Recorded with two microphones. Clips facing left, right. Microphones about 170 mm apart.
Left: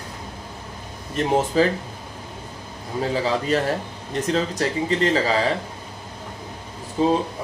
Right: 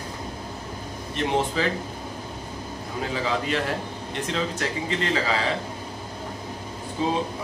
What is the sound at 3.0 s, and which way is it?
A man's voice, 40° left (ahead or behind).